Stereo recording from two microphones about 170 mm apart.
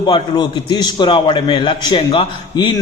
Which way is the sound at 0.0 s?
25° left (ahead or behind).